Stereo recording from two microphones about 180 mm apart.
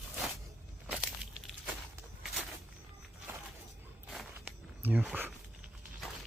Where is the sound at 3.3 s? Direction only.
15° right (ahead or behind).